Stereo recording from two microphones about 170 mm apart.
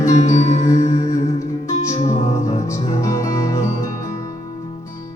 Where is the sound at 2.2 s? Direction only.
20° left (ahead or behind).